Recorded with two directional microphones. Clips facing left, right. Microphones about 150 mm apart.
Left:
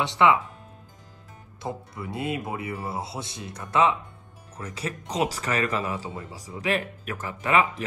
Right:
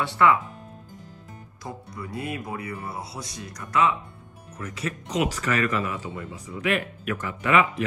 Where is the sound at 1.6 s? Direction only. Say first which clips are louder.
Left 3 dB; 25° left (ahead or behind).